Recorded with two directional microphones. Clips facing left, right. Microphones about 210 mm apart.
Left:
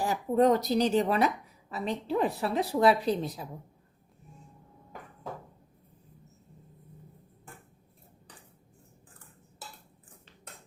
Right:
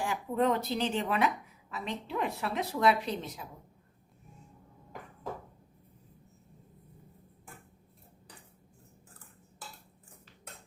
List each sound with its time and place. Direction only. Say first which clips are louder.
0.0 s a woman's voice: left 5 dB; 40° left (ahead or behind)